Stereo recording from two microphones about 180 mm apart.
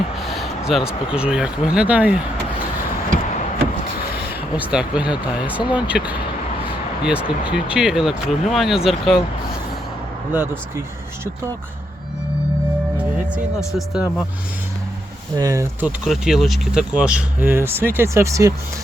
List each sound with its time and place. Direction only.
0.2 s a sound: centre (ahead or behind)
0.7 s speech: 5° right (ahead or behind)
4.5 s speech: 5° right (ahead or behind)
10.3 s speech: 10° right (ahead or behind)
13.7 s speech: 5° right (ahead or behind)
15.4 s speech: 20° right (ahead or behind)
16.0 s speech: centre (ahead or behind)